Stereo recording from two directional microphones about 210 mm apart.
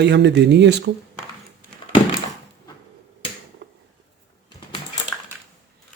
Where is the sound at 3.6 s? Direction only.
55° right (ahead or behind).